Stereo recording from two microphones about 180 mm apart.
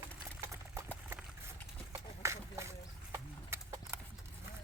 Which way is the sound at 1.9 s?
15° right (ahead or behind).